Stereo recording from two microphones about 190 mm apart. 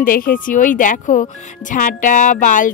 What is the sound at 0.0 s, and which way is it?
Speech, 45° left (ahead or behind).